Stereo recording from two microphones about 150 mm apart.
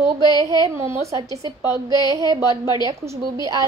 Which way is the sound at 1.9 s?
30° left (ahead or behind).